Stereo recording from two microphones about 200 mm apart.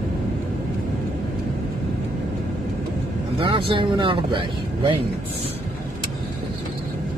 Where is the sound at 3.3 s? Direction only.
25° right (ahead or behind).